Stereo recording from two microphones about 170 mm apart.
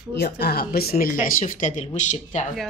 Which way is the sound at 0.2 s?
70° left (ahead or behind).